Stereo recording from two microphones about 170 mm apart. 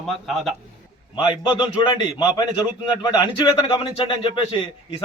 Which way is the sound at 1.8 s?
25° left (ahead or behind).